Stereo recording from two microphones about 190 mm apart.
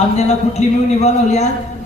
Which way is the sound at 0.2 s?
35° left (ahead or behind).